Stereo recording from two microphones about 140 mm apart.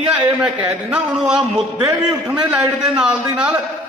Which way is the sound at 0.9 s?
5° right (ahead or behind).